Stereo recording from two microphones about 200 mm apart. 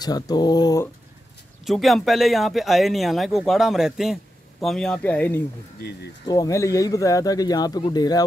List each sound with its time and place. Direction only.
0.0 s speech: 20° left (ahead or behind)
1.6 s speech: centre (ahead or behind); by 8.2 s 20° left (ahead or behind)